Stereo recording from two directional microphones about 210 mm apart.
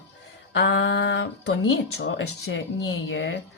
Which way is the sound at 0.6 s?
60° left (ahead or behind).